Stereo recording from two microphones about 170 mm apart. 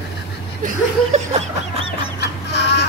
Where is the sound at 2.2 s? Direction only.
80° left.